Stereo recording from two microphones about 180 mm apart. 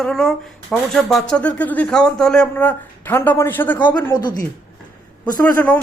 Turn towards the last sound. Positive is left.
turn(degrees=10)  # may be behind; listen again after turning